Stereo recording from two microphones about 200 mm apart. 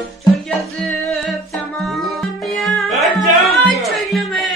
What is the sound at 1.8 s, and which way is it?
Music, centre (ahead or behind).